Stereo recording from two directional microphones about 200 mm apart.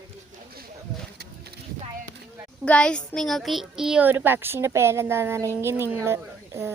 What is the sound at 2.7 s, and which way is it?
A child's voice, 5° left (ahead or behind).